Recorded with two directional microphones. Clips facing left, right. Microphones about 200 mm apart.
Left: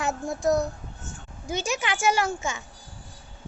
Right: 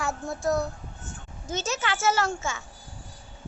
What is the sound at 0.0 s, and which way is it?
A child's voice, 20° left (ahead or behind).